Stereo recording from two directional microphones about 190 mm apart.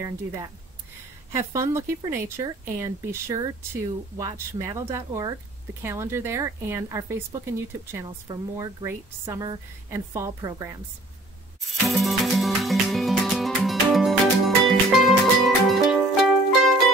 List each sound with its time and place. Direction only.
0.0 s speech: 15° right (ahead or behind)
11.9 s music: centre (ahead or behind)